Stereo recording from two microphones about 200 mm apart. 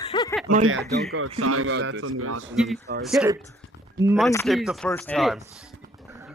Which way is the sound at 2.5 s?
Centre (ahead or behind).